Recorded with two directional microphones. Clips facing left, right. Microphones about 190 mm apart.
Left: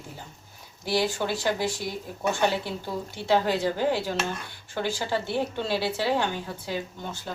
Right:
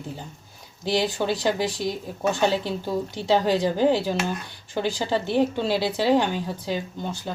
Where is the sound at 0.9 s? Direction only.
15° right (ahead or behind).